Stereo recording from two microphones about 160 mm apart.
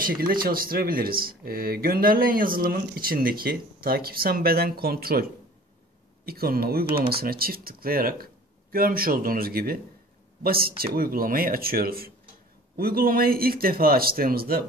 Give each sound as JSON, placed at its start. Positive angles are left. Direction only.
{"t": 0.0, "sound": "speech", "side_deg": -65}